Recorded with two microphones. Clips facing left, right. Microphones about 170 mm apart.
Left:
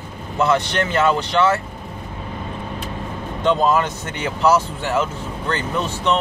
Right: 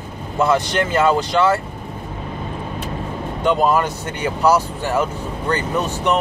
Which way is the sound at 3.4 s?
10° right (ahead or behind).